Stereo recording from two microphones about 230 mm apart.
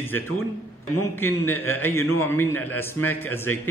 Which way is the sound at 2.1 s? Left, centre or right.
Left.